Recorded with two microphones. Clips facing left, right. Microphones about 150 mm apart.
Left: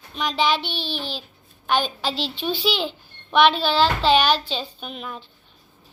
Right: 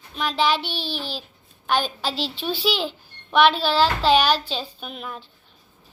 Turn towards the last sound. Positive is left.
turn(degrees=0)  # may be behind; listen again after turning